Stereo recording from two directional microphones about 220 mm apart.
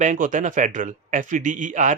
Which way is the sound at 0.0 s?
35° right (ahead or behind).